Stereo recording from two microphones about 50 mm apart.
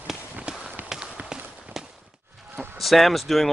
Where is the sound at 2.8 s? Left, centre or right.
Centre.